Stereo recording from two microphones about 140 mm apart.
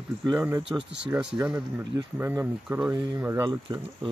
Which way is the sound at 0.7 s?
10° right (ahead or behind).